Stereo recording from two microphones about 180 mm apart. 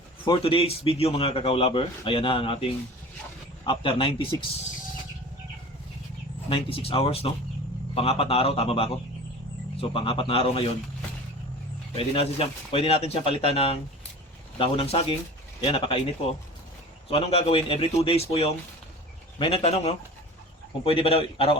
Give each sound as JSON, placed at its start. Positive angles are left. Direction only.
{"t": 0.3, "sound": "a man's voice", "side_deg": 30}
{"t": 3.7, "sound": "a man's voice", "side_deg": 30}
{"t": 6.5, "sound": "a man's voice", "side_deg": 30}
{"t": 11.9, "sound": "a man's voice", "side_deg": 30}
{"t": 17.1, "sound": "a man's voice", "side_deg": 30}